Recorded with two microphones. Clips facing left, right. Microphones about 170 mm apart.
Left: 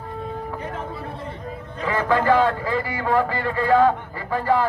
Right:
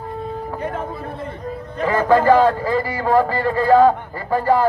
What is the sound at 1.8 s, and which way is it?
A man's voice, 40° right (ahead or behind).